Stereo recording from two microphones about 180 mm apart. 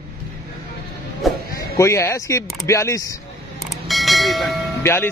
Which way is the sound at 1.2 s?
Centre (ahead or behind).